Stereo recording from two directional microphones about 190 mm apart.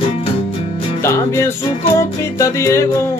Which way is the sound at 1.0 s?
15° left (ahead or behind).